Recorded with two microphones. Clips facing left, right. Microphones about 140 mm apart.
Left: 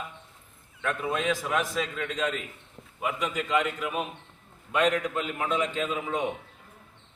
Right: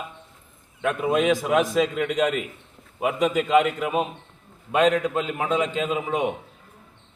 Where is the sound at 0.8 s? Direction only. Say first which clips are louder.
Right 7 dB; 20° right (ahead or behind).